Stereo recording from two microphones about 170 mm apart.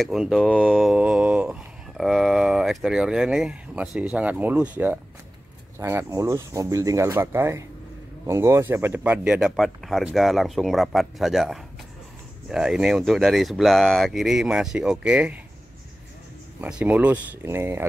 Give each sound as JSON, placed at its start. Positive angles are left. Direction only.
{"t": 0.0, "sound": "mantra", "side_deg": 0}
{"t": 5.8, "sound": "speech", "side_deg": -15}
{"t": 16.6, "sound": "speech", "side_deg": -5}